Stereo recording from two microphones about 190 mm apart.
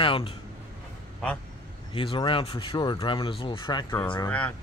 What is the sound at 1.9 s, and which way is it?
Speech, 25° left (ahead or behind).